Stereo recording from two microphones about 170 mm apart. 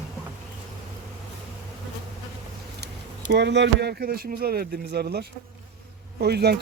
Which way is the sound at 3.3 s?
90° right.